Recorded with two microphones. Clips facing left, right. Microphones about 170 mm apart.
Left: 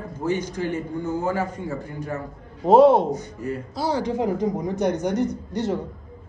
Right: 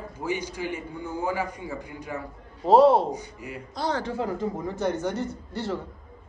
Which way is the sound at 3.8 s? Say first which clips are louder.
Left 4 dB; 10° left (ahead or behind).